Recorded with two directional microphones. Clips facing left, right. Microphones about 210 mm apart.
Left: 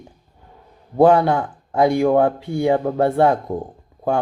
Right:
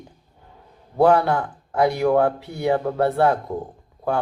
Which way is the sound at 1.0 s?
20° left (ahead or behind).